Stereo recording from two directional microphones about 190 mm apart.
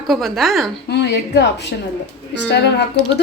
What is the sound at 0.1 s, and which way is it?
Speech, centre (ahead or behind).